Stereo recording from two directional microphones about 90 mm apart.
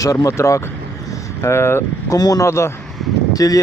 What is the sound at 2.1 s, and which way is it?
Speech, 45° left (ahead or behind).